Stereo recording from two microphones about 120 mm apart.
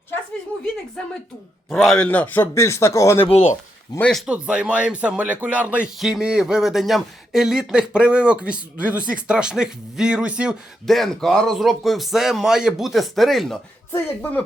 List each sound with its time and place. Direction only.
1.7 s speech: centre (ahead or behind)
2.0 s a man's voice: 15° left (ahead or behind)
3.2 s speech: 70° left (ahead or behind)
3.9 s speech: 30° left (ahead or behind)
4.3 s speech: 10° right (ahead or behind)
10.8 s speech: centre (ahead or behind)